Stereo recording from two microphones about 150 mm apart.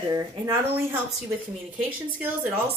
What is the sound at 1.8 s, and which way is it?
Speech, 10° right (ahead or behind).